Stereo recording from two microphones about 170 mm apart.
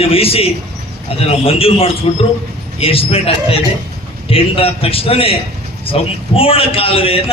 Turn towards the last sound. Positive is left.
turn(degrees=35)  # may be behind; listen again after turning